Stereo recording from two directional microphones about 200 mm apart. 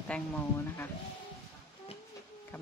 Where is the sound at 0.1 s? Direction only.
5° left (ahead or behind).